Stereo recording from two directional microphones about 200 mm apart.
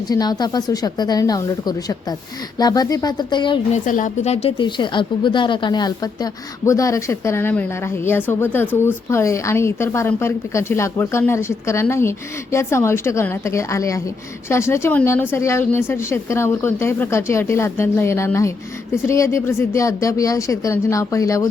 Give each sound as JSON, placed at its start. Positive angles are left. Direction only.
{"t": 0.1, "sound": "speech", "side_deg": 20}
{"t": 3.8, "sound": "a woman's voice", "side_deg": 40}